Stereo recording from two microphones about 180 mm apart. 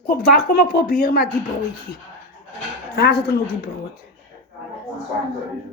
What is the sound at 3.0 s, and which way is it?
Speech, 60° left (ahead or behind).